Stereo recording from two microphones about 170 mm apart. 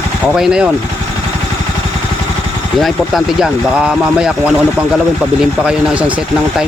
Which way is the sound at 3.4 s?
5° right (ahead or behind).